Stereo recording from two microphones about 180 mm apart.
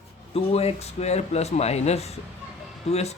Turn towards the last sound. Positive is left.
turn(degrees=35)  # may be behind; listen again after turning